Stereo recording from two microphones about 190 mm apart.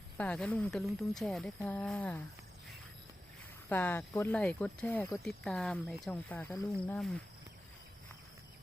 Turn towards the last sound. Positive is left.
turn(degrees=15)  # may be behind; listen again after turning